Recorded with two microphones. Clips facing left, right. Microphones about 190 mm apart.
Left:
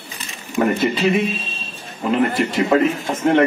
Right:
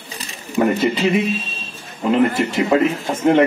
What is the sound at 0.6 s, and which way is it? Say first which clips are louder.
Speech: right 1 dB; 15° right (ahead or behind).